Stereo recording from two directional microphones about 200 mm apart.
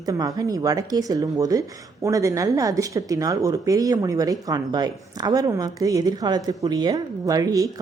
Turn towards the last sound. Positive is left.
turn(degrees=-15)  # may be behind; listen again after turning